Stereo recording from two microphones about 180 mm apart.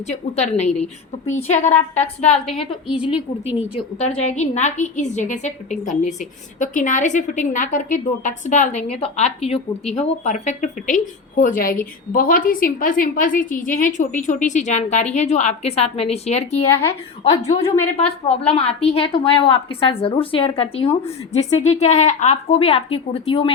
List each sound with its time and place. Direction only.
0.1 s a woman's voice: 40° left (ahead or behind)
4.2 s a woman's voice: 40° left (ahead or behind)
16.6 s speech: 15° left (ahead or behind)
17.9 s a woman's voice: 35° left (ahead or behind)